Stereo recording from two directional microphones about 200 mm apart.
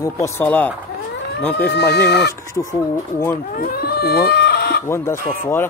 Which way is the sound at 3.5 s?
50° left (ahead or behind).